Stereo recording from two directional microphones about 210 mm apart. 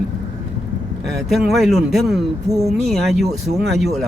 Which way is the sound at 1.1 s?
Centre (ahead or behind).